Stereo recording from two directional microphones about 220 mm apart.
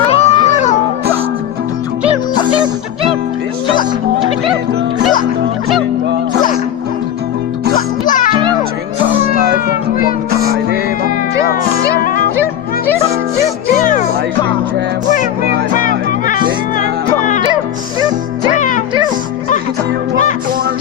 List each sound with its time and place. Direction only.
0.1 s cat: 30° left (ahead or behind)
8.0 s music: 35° left (ahead or behind)
9.3 s music: 40° left (ahead or behind)
10.4 s music: 45° right (ahead or behind)
15.8 s music: 40° left (ahead or behind)
18.5 s music: 35° left (ahead or behind)